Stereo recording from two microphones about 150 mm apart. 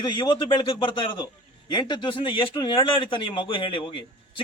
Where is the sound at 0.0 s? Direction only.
30° left (ahead or behind).